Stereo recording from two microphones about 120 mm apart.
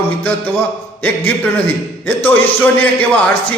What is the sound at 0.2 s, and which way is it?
A man's voice, 15° left (ahead or behind).